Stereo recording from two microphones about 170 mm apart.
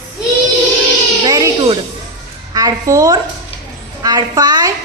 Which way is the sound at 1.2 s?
20° right (ahead or behind).